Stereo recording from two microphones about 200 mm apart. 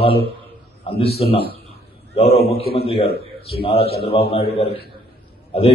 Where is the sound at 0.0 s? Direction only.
30° left (ahead or behind).